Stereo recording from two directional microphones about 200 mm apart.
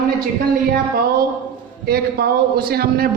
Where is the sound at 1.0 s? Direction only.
50° right (ahead or behind).